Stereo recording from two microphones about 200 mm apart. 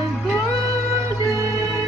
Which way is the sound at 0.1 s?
Centre (ahead or behind).